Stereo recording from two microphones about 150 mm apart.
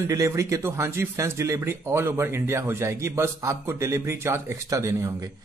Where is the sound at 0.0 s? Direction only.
20° right (ahead or behind).